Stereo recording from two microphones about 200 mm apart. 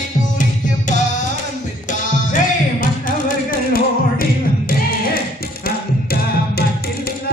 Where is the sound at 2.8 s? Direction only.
45° left (ahead or behind).